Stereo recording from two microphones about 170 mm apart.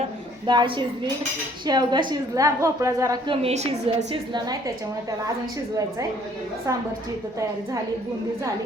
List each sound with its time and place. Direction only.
0.4 s a woman's voice: 25° right (ahead or behind)
3.2 s a woman's voice: 35° right (ahead or behind)
4.4 s a woman's voice: 25° right (ahead or behind)